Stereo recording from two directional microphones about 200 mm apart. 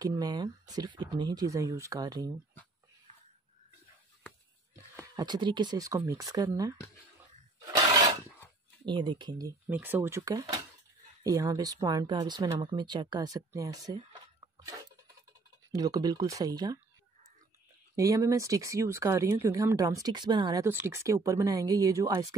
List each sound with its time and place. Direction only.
0.0 s speech: 20° right (ahead or behind)
4.9 s speech: 20° right (ahead or behind)
7.6 s a sound: 15° right (ahead or behind)
8.8 s speech: 25° right (ahead or behind)
9.7 s speech: 10° right (ahead or behind)
15.7 s speech: 20° right (ahead or behind)
17.9 s speech: 15° right (ahead or behind)